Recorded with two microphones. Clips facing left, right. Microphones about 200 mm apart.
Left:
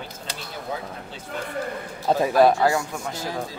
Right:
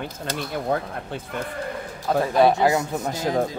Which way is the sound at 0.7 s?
60° right (ahead or behind).